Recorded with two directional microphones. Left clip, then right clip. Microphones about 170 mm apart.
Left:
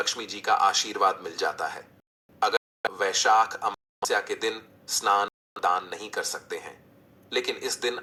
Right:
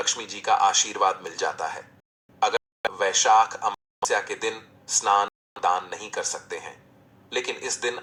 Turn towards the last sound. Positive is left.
turn(degrees=20)  # may be behind; listen again after turning